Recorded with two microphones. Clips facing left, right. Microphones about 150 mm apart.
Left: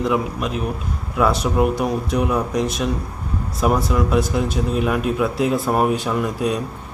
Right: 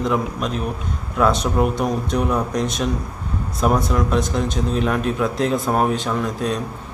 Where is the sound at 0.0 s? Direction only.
5° left (ahead or behind).